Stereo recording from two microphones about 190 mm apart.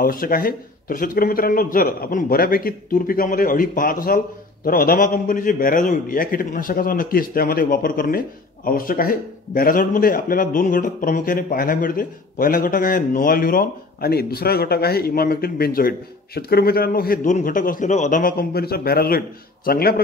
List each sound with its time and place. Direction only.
0.0 s a man's voice: 50° left (ahead or behind)